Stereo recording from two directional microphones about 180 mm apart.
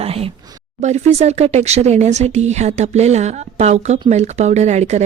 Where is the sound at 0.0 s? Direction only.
35° right (ahead or behind).